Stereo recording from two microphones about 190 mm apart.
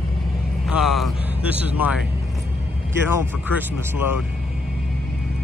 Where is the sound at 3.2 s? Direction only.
10° right (ahead or behind).